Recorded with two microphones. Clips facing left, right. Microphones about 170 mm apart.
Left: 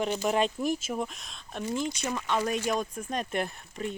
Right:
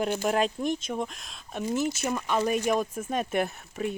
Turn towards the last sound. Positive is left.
turn(degrees=-5)  # may be behind; listen again after turning